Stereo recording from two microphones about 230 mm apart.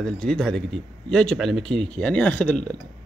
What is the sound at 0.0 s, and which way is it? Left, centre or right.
A man's voice, centre.